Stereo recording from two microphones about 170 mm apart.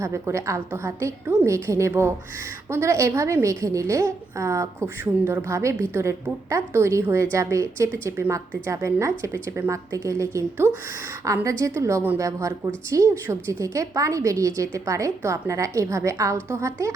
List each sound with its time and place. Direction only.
0.0 s a woman's voice: 15° right (ahead or behind)